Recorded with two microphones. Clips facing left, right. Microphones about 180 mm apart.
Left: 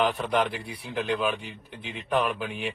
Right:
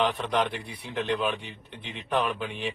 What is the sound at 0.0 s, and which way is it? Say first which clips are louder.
A man's voice: left 1 dB; 5° left (ahead or behind).